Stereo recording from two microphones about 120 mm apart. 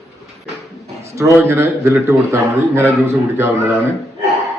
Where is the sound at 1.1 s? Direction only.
25° right (ahead or behind).